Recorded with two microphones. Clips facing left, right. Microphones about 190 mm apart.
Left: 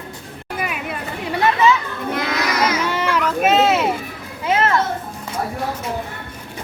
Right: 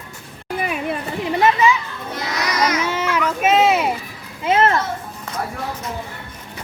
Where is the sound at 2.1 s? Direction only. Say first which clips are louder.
Left 3 dB; 55° left (ahead or behind).